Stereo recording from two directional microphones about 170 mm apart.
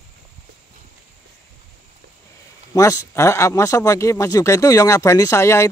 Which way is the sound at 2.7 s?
20° left (ahead or behind).